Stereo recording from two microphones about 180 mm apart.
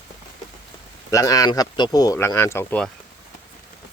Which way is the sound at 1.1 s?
20° left (ahead or behind).